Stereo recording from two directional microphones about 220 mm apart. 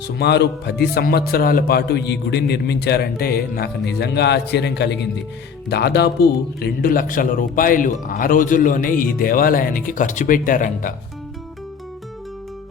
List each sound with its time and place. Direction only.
0.2 s a man's voice: 50° left (ahead or behind)